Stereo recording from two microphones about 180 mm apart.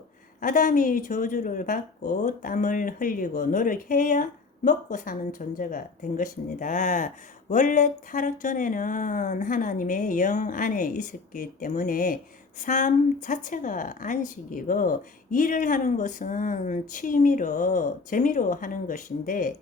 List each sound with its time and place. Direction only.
0.4 s a woman's voice: 50° left (ahead or behind)